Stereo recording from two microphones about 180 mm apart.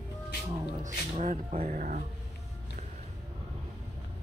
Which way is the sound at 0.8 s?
40° right (ahead or behind).